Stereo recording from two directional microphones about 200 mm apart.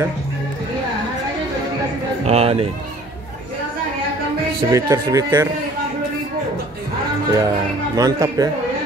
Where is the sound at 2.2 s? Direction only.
30° right (ahead or behind).